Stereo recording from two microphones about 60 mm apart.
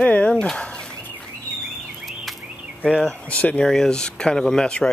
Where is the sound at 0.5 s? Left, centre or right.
Centre.